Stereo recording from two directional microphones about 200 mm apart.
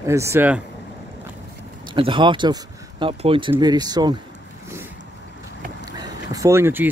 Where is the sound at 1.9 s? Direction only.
25° right (ahead or behind).